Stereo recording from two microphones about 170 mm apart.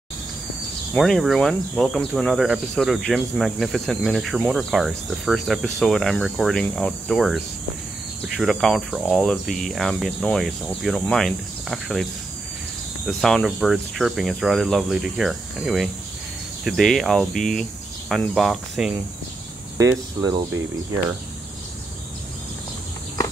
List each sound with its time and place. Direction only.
0.9 s speech: centre (ahead or behind)
19.8 s speech: 20° right (ahead or behind)